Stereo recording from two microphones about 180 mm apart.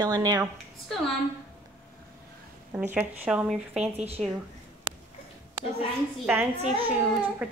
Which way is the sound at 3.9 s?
35° right (ahead or behind).